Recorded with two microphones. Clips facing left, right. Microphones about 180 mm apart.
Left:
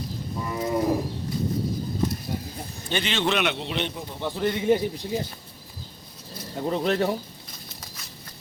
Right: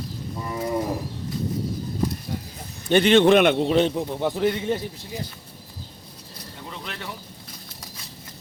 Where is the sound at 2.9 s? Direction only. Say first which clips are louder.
Right 10 dB; 55° right (ahead or behind).